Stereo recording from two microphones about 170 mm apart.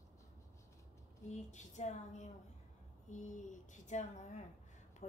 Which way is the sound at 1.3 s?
45° left (ahead or behind).